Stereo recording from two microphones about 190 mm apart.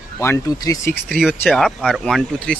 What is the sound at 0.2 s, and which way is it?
Speech, 15° left (ahead or behind).